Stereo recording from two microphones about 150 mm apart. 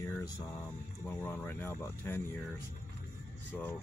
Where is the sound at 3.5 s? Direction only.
10° left (ahead or behind).